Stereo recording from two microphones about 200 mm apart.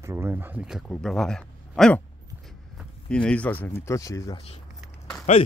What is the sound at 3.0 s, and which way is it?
Speech, 5° left (ahead or behind).